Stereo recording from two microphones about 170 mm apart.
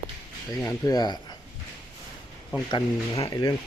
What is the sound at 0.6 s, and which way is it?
Speech, 20° left (ahead or behind).